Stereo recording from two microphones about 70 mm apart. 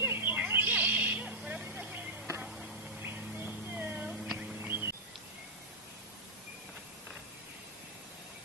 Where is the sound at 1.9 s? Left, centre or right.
Right.